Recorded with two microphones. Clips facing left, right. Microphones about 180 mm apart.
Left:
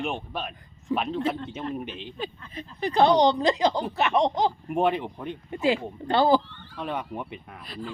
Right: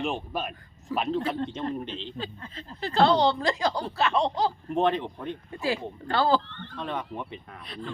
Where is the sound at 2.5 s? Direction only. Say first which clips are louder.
Left 3 dB; 15° left (ahead or behind).